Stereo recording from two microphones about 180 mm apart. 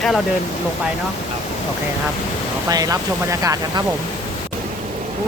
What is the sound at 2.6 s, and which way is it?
Speech, 20° right (ahead or behind).